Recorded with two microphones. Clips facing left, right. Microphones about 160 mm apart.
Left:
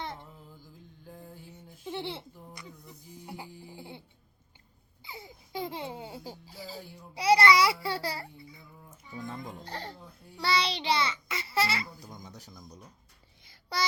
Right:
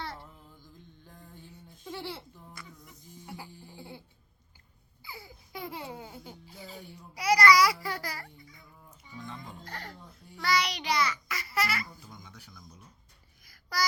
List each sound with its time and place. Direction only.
0.0 s music: 20° left (ahead or behind)
1.0 s music: 5° left (ahead or behind)
1.9 s a sound: 25° left (ahead or behind)
3.2 s music: 20° left (ahead or behind)
5.0 s speech: 25° left (ahead or behind)
9.2 s a child's voice: 45° left (ahead or behind)
9.6 s a child's voice: 30° left (ahead or behind)
12.1 s music: 40° left (ahead or behind)
12.6 s speech: 35° left (ahead or behind)
13.4 s a sound: 25° left (ahead or behind)